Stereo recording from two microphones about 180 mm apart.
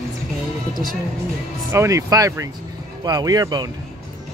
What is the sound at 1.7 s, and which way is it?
Speech, 15° right (ahead or behind).